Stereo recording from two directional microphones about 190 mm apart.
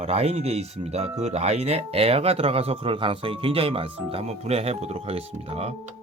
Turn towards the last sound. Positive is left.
turn(degrees=-30)  # may be behind; listen again after turning